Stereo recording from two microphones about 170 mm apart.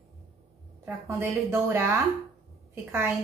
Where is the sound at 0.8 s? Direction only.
15° right (ahead or behind).